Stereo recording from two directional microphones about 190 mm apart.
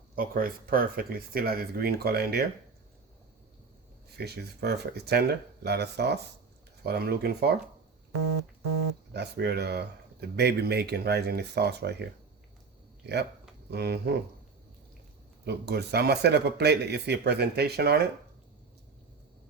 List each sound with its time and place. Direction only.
0.2 s speech: 50° right (ahead or behind)
4.2 s speech: 55° right (ahead or behind)
9.1 s speech: 60° right (ahead or behind)
13.7 s speech: 60° right (ahead or behind)
15.4 s speech: 60° right (ahead or behind)